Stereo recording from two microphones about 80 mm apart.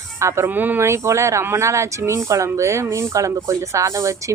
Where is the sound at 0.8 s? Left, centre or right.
Right.